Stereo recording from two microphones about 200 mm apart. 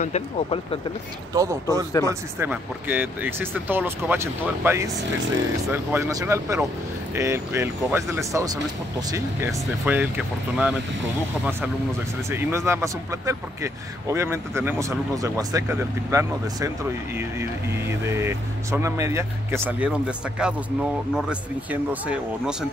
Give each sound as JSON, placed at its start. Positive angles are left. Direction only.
{"t": 0.0, "sound": "speech", "side_deg": 30}
{"t": 1.3, "sound": "speech", "side_deg": -15}
{"t": 12.3, "sound": "speech", "side_deg": -15}